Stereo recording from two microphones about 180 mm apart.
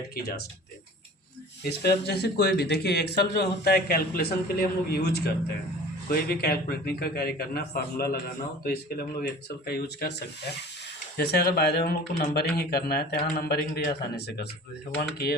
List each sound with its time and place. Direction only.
0.1 s speech: 60° left (ahead or behind)
1.8 s speech: 65° left (ahead or behind)